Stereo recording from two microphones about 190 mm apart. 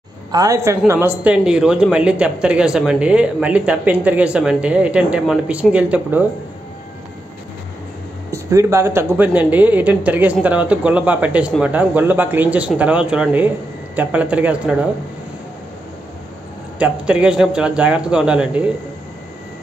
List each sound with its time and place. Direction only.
0.3 s a woman's voice: 20° right (ahead or behind)
8.3 s speech: 15° right (ahead or behind)
16.7 s a man's voice: 5° right (ahead or behind)